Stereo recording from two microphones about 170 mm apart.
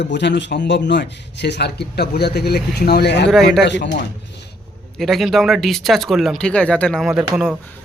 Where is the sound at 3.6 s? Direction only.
90° left.